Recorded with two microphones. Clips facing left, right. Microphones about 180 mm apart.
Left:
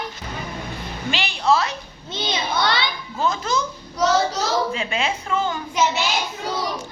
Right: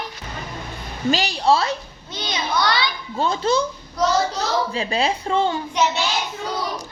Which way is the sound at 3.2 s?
30° right (ahead or behind).